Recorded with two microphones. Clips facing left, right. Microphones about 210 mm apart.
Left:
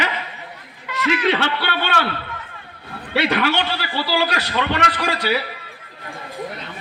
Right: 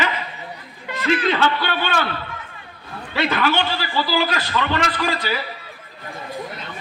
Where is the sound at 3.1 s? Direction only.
70° left (ahead or behind).